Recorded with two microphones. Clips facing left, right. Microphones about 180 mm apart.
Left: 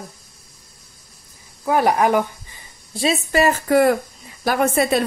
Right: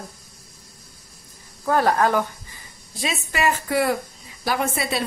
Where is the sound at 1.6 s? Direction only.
15° left (ahead or behind).